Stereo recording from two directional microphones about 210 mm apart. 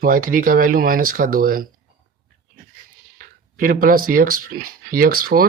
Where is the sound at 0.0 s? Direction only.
40° right (ahead or behind).